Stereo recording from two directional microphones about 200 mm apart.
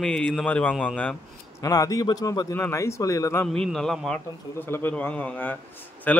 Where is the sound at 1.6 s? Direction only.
15° left (ahead or behind).